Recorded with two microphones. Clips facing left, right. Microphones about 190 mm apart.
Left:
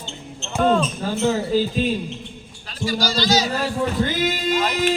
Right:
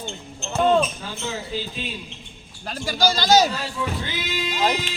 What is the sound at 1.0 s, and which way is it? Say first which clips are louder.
Speech: left 10 dB; 45° left (ahead or behind).